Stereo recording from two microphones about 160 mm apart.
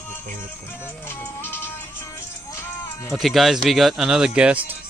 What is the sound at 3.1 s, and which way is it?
Speech, centre (ahead or behind).